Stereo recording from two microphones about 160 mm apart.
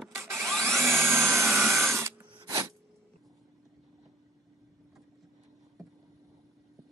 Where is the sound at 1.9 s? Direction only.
15° right (ahead or behind).